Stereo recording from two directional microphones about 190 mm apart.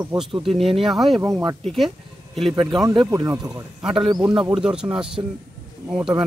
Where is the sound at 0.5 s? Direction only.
Centre (ahead or behind).